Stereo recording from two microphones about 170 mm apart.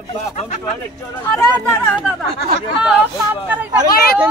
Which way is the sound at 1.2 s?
15° left (ahead or behind).